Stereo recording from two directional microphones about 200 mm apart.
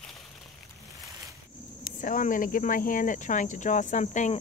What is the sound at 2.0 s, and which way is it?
Speech, 40° left (ahead or behind).